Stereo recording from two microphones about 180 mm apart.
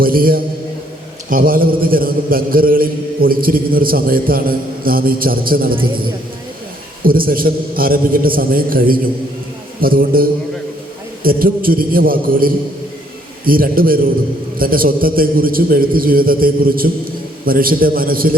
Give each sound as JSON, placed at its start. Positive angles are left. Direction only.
{"t": 0.0, "sound": "a man's voice", "side_deg": -55}
{"t": 5.7, "sound": "a woman's voice", "side_deg": -30}
{"t": 7.0, "sound": "a man's voice", "side_deg": -55}